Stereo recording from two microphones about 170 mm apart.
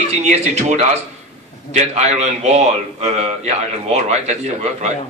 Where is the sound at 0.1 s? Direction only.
40° right (ahead or behind).